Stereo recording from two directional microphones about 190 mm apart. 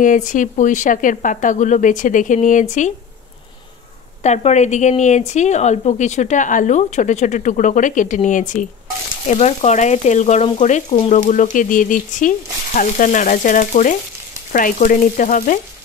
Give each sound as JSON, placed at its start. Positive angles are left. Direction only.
{"t": 0.0, "sound": "frying", "side_deg": 45}
{"t": 4.2, "sound": "frying", "side_deg": 35}
{"t": 14.5, "sound": "stir", "side_deg": 45}